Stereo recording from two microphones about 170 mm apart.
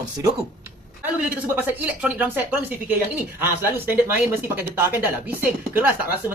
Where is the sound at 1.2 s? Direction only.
10° right (ahead or behind).